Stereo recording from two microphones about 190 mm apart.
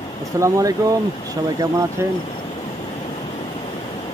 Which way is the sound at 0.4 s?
15° right (ahead or behind).